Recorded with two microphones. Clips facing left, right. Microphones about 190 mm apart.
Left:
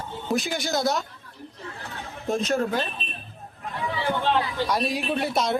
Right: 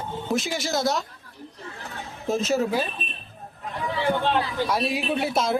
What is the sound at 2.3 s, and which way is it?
Speech, 5° right (ahead or behind).